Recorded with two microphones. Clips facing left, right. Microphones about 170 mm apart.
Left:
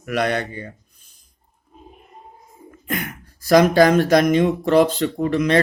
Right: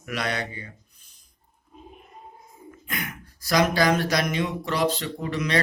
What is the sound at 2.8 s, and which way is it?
A man's voice, 50° left (ahead or behind).